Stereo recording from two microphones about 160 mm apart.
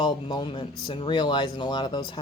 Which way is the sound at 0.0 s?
30° left (ahead or behind).